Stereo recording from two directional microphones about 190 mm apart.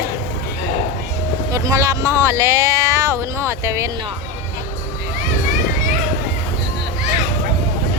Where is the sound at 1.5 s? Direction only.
15° right (ahead or behind).